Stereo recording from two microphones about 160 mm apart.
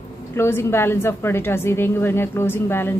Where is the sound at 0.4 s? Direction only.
15° left (ahead or behind).